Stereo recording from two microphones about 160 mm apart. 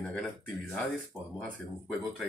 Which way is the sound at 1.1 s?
15° left (ahead or behind).